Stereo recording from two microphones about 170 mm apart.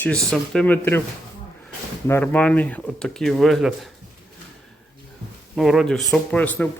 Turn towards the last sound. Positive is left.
turn(degrees=10)  # may be behind; listen again after turning